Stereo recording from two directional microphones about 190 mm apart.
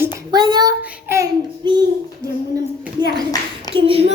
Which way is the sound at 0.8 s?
10° right (ahead or behind).